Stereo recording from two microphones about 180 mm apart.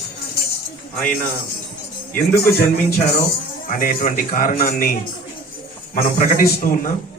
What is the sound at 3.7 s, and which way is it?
Speech, 50° left (ahead or behind).